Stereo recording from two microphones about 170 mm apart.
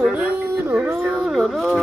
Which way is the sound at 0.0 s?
10° right (ahead or behind).